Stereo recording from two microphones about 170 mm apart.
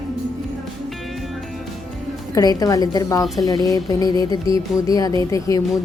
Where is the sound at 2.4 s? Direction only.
20° left (ahead or behind).